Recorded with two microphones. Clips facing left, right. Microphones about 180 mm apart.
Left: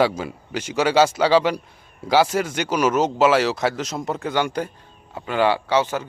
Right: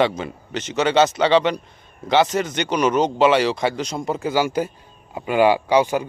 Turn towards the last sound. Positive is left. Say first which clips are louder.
# right 3 dB
turn(degrees=-15)  # may be behind; listen again after turning